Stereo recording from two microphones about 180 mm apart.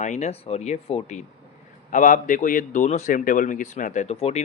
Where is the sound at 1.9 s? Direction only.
50° left (ahead or behind).